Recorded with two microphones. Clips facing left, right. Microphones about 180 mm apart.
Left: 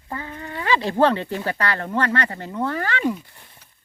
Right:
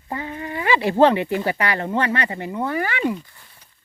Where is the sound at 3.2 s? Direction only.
25° left (ahead or behind).